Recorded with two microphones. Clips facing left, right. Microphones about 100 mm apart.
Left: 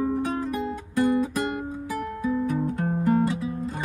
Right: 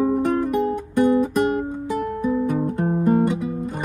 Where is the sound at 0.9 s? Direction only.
15° right (ahead or behind).